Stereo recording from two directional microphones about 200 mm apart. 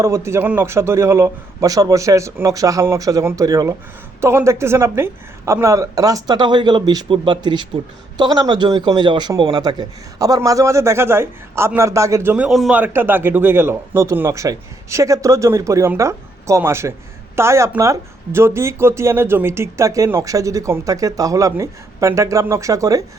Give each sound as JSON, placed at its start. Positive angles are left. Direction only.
{"t": 0.0, "sound": "a man's voice", "side_deg": -15}